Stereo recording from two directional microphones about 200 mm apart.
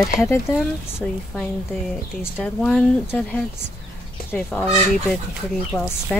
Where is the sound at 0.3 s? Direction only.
15° left (ahead or behind).